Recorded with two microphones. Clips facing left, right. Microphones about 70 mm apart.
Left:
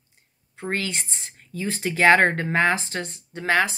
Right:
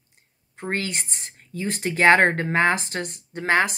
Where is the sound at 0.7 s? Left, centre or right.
Right.